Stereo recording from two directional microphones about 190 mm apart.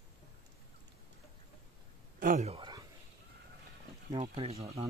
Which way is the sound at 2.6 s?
20° right (ahead or behind).